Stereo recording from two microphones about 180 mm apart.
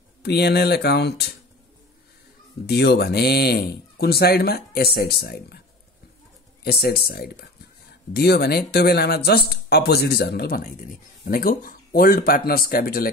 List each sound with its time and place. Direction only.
0.2 s speech: 65° left (ahead or behind)
2.6 s speech: 65° left (ahead or behind)
6.6 s speech: 60° left (ahead or behind)